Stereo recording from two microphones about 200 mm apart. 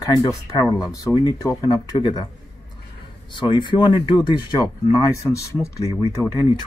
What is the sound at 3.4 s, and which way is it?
Speech, 25° left (ahead or behind).